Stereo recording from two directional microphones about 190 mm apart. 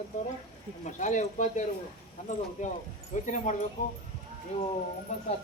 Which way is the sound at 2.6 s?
40° left (ahead or behind).